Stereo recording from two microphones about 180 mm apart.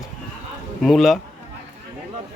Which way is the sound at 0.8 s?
Centre (ahead or behind).